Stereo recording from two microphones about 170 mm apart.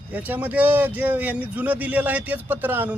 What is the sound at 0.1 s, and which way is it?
Speech, 10° right (ahead or behind).